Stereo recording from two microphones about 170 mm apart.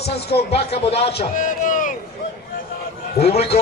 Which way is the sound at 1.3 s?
50° left (ahead or behind).